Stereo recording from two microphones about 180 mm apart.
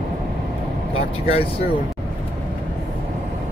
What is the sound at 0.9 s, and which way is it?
Speech, 35° left (ahead or behind).